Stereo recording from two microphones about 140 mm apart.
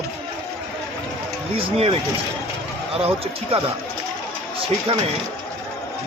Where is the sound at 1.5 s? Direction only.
40° right (ahead or behind).